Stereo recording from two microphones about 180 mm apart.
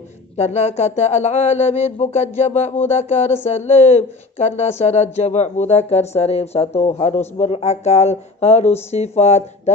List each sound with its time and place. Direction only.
0.4 s speech: 35° left (ahead or behind)